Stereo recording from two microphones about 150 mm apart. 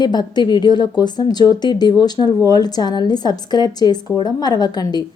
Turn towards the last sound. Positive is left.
turn(degrees=30)  # may be behind; listen again after turning